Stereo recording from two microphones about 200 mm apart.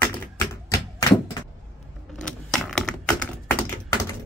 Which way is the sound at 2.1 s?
Centre (ahead or behind).